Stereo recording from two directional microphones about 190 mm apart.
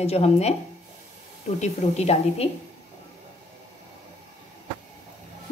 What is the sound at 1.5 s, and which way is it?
Speech, 35° left (ahead or behind).